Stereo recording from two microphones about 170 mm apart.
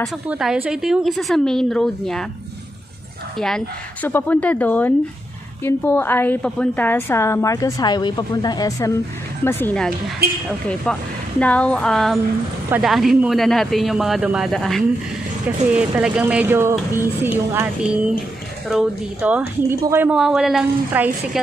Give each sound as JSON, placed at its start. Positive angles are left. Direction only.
{"t": 0.3, "sound": "speech", "side_deg": -5}
{"t": 3.3, "sound": "a woman's voice", "side_deg": 5}
{"t": 10.9, "sound": "speech", "side_deg": 10}